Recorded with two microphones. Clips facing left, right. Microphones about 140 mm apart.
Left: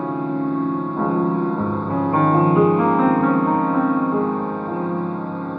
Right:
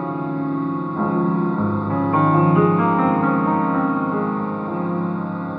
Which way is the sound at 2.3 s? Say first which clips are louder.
Left 2 dB; 35° left (ahead or behind).